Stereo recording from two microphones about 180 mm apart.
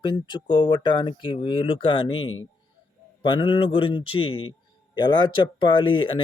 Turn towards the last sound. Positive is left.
turn(degrees=30)  # may be behind; listen again after turning